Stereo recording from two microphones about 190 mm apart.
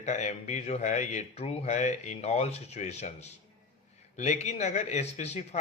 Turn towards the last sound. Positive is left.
turn(degrees=35)  # may be behind; listen again after turning